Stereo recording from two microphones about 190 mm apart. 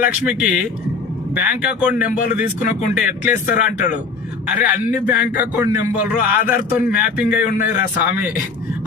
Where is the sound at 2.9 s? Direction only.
10° right (ahead or behind).